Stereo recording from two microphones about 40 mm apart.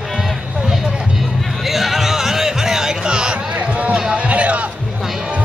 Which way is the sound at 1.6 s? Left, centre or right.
Centre.